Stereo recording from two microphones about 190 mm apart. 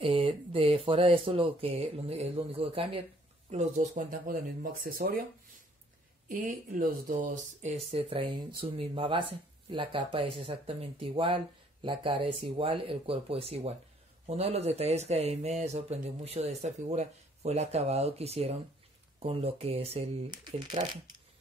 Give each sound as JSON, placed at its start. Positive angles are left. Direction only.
{"t": 0.0, "sound": "speech", "side_deg": -30}
{"t": 6.2, "sound": "speech", "side_deg": -45}